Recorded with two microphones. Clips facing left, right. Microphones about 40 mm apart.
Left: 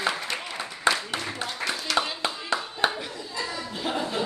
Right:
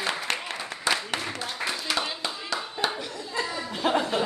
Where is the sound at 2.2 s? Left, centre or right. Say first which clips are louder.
Left 3 dB; left.